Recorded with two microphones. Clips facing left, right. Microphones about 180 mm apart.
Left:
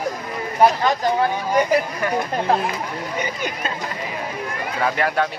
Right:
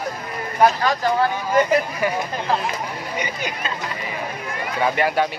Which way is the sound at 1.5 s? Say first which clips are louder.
Right 1 dB; 10° left (ahead or behind).